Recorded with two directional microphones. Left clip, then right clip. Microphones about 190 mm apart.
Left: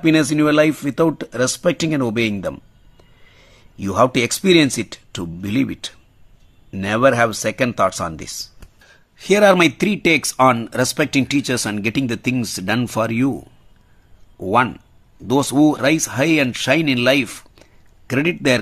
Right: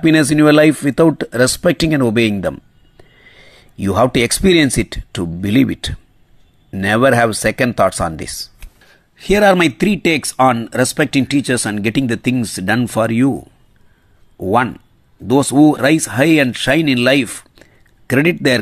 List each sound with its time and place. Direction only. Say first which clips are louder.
0.0 s speech: right 4 dB; 15° right (ahead or behind)